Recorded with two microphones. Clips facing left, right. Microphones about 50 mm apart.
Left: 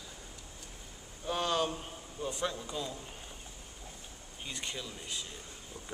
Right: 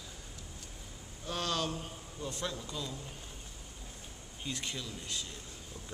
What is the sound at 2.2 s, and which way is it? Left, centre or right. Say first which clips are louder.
Speech: left 3 dB; centre.